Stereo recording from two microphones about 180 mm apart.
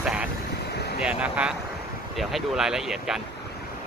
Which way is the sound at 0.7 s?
65° left (ahead or behind).